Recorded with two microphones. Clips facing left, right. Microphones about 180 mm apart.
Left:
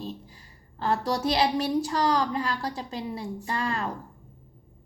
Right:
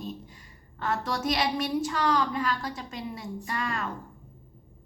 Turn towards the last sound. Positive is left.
turn(degrees=35)  # may be behind; listen again after turning